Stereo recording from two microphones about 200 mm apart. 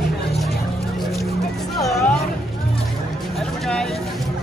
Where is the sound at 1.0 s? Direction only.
Centre (ahead or behind).